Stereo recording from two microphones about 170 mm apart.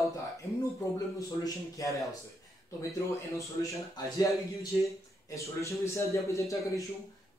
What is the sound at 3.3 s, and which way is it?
Speech, 20° left (ahead or behind).